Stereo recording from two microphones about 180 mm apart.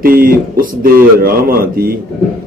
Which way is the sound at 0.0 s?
55° right (ahead or behind).